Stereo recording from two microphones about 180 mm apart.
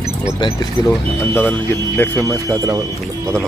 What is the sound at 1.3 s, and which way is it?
Speech, 10° left (ahead or behind).